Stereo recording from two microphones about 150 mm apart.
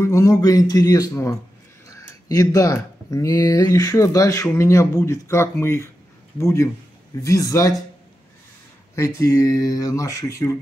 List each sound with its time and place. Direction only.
0.0 s speech: 20° left (ahead or behind)
8.9 s speech: 20° left (ahead or behind)